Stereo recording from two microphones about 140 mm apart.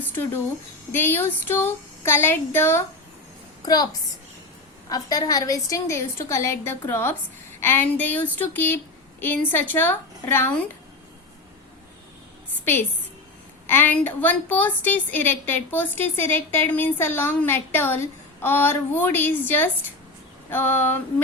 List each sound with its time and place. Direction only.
0.9 s a woman's voice: 15° left (ahead or behind)
4.9 s a woman's voice: 25° left (ahead or behind)
13.7 s a woman's voice: 15° left (ahead or behind)